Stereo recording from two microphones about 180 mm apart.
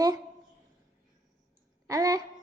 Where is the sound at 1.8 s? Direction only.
20° right (ahead or behind).